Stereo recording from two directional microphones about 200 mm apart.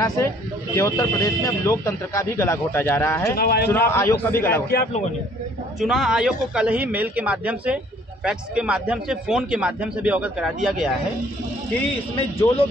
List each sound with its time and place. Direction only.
0.7 s speech: 15° left (ahead or behind)
3.3 s a man's voice: 50° left (ahead or behind)
3.7 s speech: 10° left (ahead or behind)
5.8 s a man's voice: centre (ahead or behind)
12.2 s speech: 30° left (ahead or behind)